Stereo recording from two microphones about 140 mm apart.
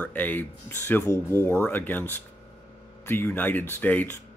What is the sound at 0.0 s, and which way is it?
Speech, 10° left (ahead or behind).